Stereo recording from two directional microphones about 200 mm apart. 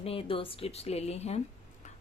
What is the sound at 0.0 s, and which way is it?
Speech, 25° left (ahead or behind).